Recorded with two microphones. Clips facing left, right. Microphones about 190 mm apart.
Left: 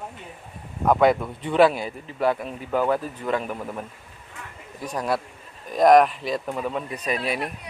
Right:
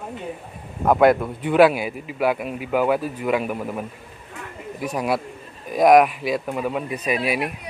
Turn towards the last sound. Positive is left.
turn(degrees=-10)  # may be behind; listen again after turning